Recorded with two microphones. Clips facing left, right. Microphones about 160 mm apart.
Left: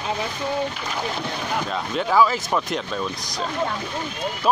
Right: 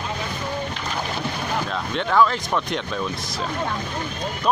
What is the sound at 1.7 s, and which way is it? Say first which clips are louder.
Speech: left 1 dB; 5° left (ahead or behind).